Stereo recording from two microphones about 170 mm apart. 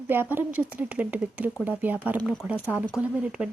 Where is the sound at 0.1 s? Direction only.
10° right (ahead or behind).